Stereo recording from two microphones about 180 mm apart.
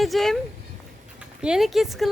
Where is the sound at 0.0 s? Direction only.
Centre (ahead or behind).